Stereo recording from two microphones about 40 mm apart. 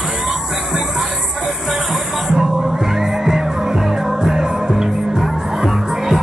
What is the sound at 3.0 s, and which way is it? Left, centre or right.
Music, centre.